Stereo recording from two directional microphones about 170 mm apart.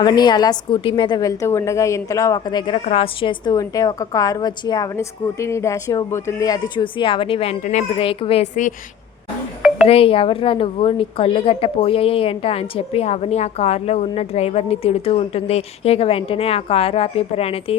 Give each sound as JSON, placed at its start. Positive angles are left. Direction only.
{"t": 0.0, "sound": "a woman's voice", "side_deg": 25}
{"t": 7.6, "sound": "a woman's voice", "side_deg": 45}
{"t": 9.8, "sound": "a woman's voice", "side_deg": 35}